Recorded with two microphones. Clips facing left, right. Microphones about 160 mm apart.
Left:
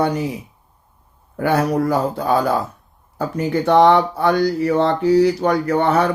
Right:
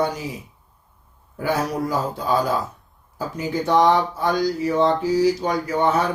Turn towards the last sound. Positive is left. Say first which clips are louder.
# left 4 dB
turn(degrees=60)  # may be behind; listen again after turning